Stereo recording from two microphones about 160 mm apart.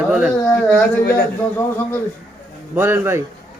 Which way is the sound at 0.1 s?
5° right (ahead or behind).